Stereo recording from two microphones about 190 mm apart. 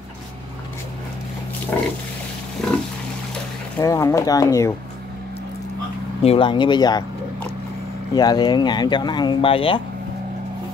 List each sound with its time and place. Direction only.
1.7 s pig: 10° left (ahead or behind)
3.8 s speech: 15° left (ahead or behind)
6.2 s speech: 30° left (ahead or behind)
8.1 s speech: 20° left (ahead or behind)